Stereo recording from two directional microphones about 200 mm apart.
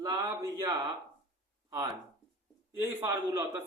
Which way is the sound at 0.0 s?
20° right (ahead or behind).